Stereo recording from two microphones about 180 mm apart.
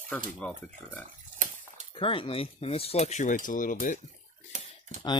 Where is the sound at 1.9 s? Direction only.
30° left (ahead or behind); by 4.0 s 50° left (ahead or behind).